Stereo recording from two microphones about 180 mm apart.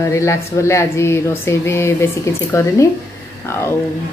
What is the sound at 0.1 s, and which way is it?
A woman's voice, 15° left (ahead or behind).